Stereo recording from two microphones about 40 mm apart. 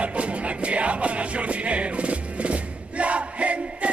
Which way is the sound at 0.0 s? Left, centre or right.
Right.